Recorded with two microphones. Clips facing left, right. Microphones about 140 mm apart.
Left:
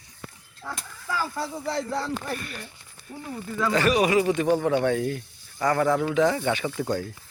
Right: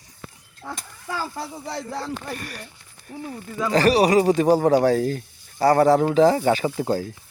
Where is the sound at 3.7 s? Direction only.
35° right (ahead or behind).